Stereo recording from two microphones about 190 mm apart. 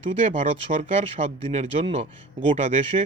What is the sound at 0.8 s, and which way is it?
A man's voice, 30° right (ahead or behind).